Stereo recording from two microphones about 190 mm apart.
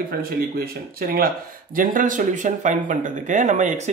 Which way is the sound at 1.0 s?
50° right (ahead or behind).